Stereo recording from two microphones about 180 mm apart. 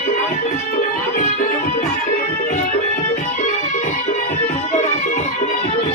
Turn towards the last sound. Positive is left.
turn(degrees=45)  # may be behind; listen again after turning